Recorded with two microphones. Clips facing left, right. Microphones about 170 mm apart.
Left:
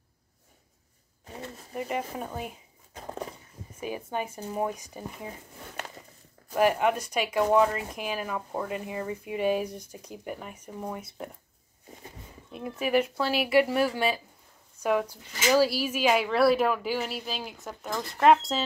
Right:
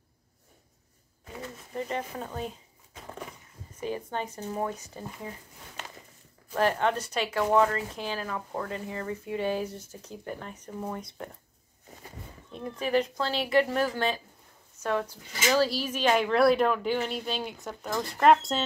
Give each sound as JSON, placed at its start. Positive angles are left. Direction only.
{"t": 1.8, "sound": "speech", "side_deg": 15}
{"t": 2.9, "sound": "a sound", "side_deg": 40}
{"t": 3.8, "sound": "speech", "side_deg": 10}
{"t": 6.5, "sound": "speech", "side_deg": 10}
{"t": 12.5, "sound": "speech", "side_deg": 10}